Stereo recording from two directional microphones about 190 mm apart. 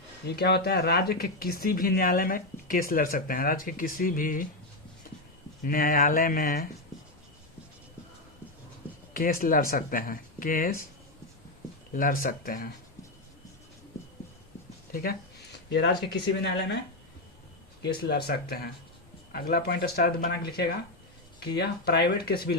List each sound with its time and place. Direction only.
0.3 s speech: 60° left (ahead or behind)
5.6 s speech: 45° left (ahead or behind)
9.1 s speech: 50° left (ahead or behind)
11.9 s speech: 50° left (ahead or behind)
14.9 s speech: 50° left (ahead or behind)
15.5 s speech: 60° left (ahead or behind)
17.8 s speech: 55° left (ahead or behind)